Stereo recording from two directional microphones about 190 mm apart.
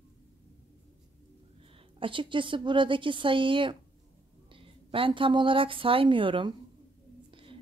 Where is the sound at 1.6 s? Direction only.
30° right (ahead or behind).